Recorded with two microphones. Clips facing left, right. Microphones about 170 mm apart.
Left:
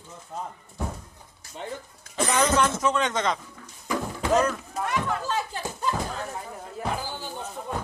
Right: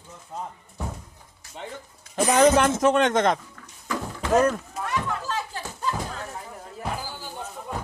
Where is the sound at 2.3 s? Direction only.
45° right (ahead or behind).